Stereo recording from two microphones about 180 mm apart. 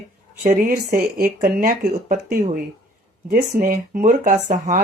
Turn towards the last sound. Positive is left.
turn(degrees=-45)  # may be behind; listen again after turning